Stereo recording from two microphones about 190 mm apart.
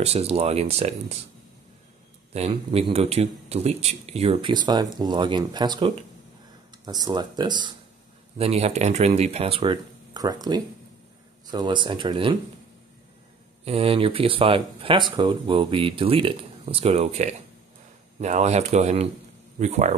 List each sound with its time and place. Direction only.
0.0 s speech: 30° right (ahead or behind)
2.3 s speech: 35° right (ahead or behind)
13.7 s speech: 30° right (ahead or behind)